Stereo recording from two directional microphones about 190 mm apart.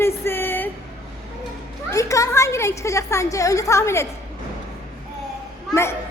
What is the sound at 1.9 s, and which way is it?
A woman's voice, 15° left (ahead or behind).